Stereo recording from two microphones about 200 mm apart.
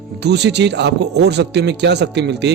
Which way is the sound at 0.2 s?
55° right (ahead or behind).